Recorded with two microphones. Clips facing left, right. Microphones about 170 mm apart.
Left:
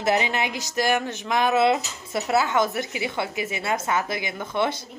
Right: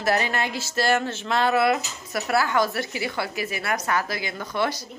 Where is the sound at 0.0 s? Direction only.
20° left (ahead or behind).